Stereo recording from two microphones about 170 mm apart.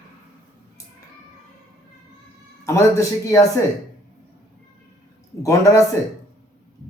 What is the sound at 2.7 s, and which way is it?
Speech, 15° left (ahead or behind).